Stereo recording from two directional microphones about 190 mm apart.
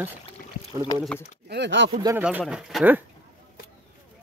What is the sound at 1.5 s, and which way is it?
Speech, 65° right (ahead or behind).